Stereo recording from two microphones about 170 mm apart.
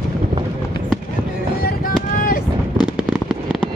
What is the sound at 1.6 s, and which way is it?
Vehicle, 60° left (ahead or behind).